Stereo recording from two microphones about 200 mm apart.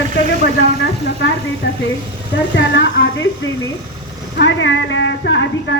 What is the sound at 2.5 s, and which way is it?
Speech, 65° left (ahead or behind).